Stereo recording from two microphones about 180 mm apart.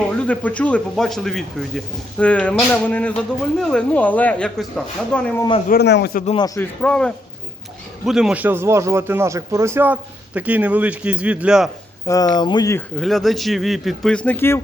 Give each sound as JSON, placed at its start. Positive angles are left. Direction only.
{"t": 0.1, "sound": "a man's voice", "side_deg": 10}
{"t": 5.6, "sound": "a man's voice", "side_deg": 65}
{"t": 6.3, "sound": "speech", "side_deg": 20}
{"t": 6.6, "sound": "a man's voice", "side_deg": 5}
{"t": 12.0, "sound": "speech", "side_deg": 20}
{"t": 13.0, "sound": "a man's voice", "side_deg": 0}